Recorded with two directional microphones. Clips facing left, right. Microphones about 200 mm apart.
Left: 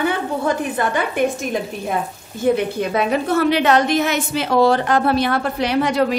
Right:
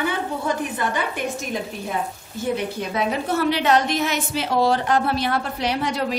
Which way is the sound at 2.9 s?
60° left (ahead or behind).